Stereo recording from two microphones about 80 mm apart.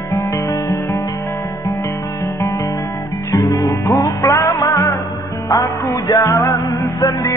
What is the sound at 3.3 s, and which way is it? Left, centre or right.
Music, left.